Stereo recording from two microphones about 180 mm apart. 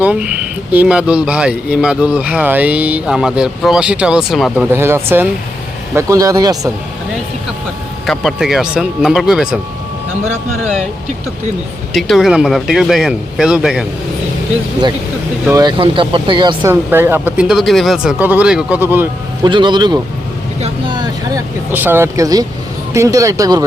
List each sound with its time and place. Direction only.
0.0 s speech: 5° right (ahead or behind)
8.0 s speech: centre (ahead or behind)
11.9 s speech: centre (ahead or behind)
15.5 s speech: 25° right (ahead or behind)
16.6 s speech: 15° right (ahead or behind)
19.4 s speech: 25° right (ahead or behind)
21.7 s speech: 10° right (ahead or behind)